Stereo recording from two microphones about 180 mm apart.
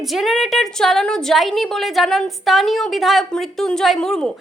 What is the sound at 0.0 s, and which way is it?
A woman's voice, centre (ahead or behind).